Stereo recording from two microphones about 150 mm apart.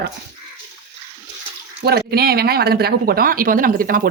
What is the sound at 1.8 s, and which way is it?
Speech, 90° right.